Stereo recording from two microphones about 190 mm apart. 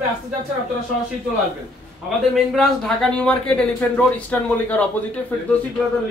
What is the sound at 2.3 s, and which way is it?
A man's voice, centre (ahead or behind).